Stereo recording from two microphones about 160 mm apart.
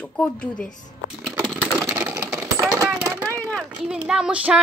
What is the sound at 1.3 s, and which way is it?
Typing, 5° right (ahead or behind).